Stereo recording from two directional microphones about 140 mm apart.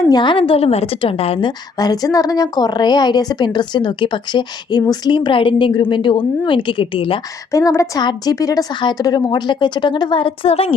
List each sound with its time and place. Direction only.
0.1 s a woman's voice: 35° left (ahead or behind)
7.5 s a woman's voice: 20° left (ahead or behind); by 10.8 s 45° left (ahead or behind)